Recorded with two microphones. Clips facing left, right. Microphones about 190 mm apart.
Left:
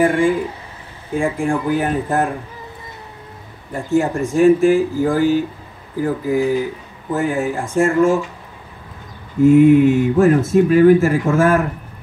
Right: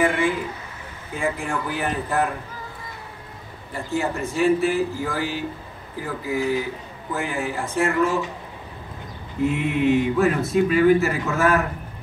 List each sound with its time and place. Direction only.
0.0 s speech: 50° left (ahead or behind)
3.7 s speech: 45° left (ahead or behind)
9.4 s speech: 45° left (ahead or behind)